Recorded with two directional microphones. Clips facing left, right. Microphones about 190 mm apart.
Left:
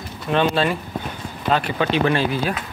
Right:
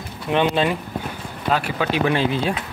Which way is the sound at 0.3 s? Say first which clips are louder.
Even; 15° right (ahead or behind).